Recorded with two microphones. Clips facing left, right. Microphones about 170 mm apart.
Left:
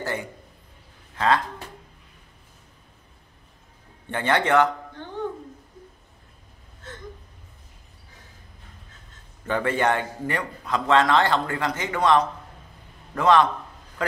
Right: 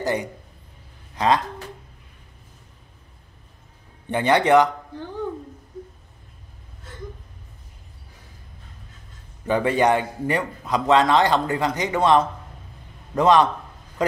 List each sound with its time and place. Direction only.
0.0 s a man's voice: 15° right (ahead or behind)
4.1 s a man's voice: 15° right (ahead or behind)
9.5 s a man's voice: 15° right (ahead or behind)